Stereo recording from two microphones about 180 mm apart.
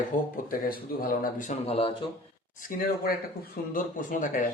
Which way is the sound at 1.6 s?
35° left (ahead or behind).